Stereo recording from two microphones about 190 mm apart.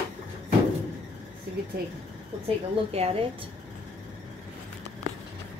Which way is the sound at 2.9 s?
30° right (ahead or behind).